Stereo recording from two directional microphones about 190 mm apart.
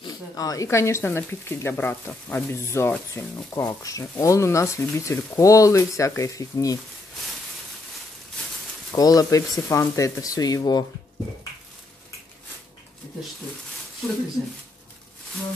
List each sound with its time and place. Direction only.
0.0 s speech: 20° left (ahead or behind)
8.9 s speech: 20° left (ahead or behind)